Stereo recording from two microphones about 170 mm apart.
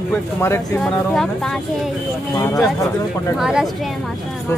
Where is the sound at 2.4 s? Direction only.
20° left (ahead or behind).